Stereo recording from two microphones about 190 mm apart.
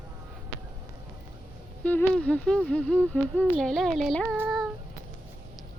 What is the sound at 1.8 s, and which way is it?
Speech, 5° left (ahead or behind).